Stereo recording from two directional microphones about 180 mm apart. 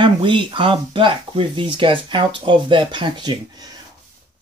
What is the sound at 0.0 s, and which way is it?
Speech, 25° right (ahead or behind).